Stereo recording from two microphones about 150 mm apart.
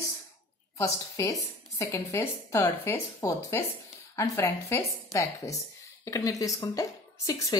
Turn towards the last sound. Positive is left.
turn(degrees=25)  # may be behind; listen again after turning